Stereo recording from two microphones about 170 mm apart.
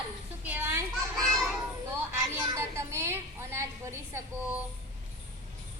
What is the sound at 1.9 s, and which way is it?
A woman's voice, 20° right (ahead or behind).